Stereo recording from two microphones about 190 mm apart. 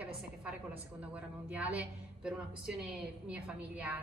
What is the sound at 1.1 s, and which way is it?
A woman's voice, 5° right (ahead or behind).